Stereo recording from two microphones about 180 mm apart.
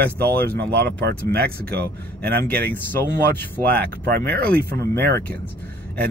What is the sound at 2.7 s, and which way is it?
Speech, 10° left (ahead or behind).